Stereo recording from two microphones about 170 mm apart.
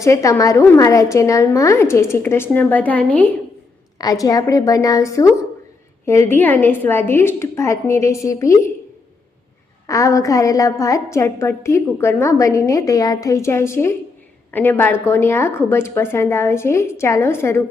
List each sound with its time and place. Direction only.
0.0 s a woman's voice: 20° left (ahead or behind)
3.9 s a woman's voice: 20° left (ahead or behind)
9.8 s a woman's voice: 20° left (ahead or behind)